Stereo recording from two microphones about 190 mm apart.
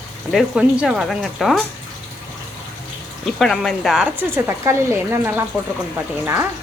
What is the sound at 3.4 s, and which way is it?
Speech, centre (ahead or behind).